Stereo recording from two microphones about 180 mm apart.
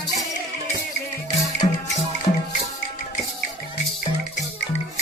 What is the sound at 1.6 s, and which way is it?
Music, 30° left (ahead or behind).